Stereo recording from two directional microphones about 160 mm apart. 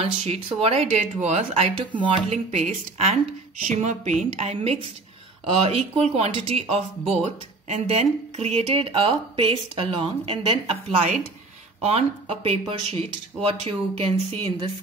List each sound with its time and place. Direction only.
0.0 s speech: 35° right (ahead or behind)